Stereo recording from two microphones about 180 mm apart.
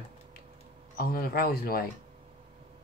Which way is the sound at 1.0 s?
55° left (ahead or behind).